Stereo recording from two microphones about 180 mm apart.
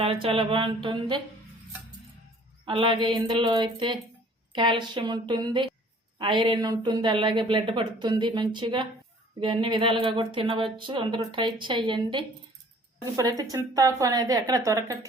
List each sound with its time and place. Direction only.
0.0 s speech: 30° right (ahead or behind)
2.6 s speech: 30° right (ahead or behind)